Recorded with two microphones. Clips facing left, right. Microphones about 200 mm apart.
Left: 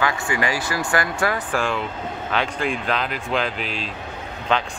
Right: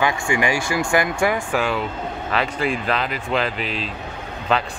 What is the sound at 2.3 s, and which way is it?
Speech, centre (ahead or behind).